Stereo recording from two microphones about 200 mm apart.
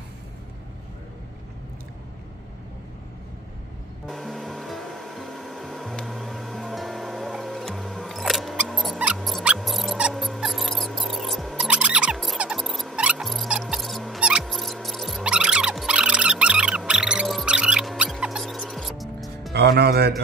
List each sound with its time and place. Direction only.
4.1 s hair dryer: centre (ahead or behind)
19.5 s music: 55° right (ahead or behind)